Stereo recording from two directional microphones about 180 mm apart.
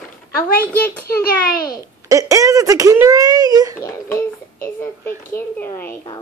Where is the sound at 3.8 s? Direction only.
15° left (ahead or behind).